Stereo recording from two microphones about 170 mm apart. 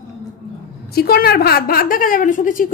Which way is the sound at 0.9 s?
65° left (ahead or behind).